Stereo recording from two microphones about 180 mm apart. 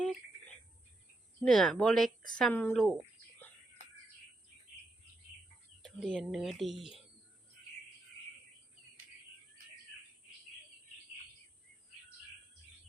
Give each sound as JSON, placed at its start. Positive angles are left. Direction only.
{"t": 0.0, "sound": "a sound", "side_deg": 5}
{"t": 1.5, "sound": "speech", "side_deg": 5}
{"t": 5.8, "sound": "speech", "side_deg": 0}